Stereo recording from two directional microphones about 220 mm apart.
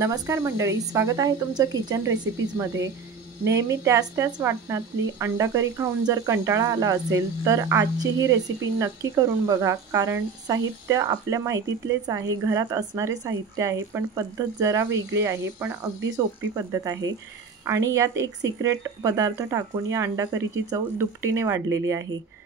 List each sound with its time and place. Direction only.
0.0 s a woman's voice: 15° right (ahead or behind)